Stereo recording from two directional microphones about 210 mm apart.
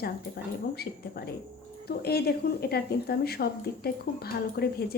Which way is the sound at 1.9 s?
50° left (ahead or behind).